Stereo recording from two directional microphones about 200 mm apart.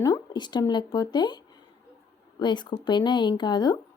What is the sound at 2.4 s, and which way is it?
Speech, 20° left (ahead or behind).